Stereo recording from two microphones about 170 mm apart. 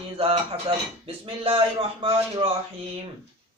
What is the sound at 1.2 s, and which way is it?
Speech, 30° right (ahead or behind).